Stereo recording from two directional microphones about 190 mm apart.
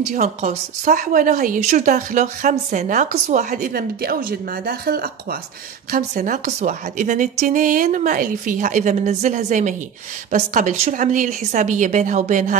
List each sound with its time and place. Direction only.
0.1 s a woman's voice: 35° right (ahead or behind)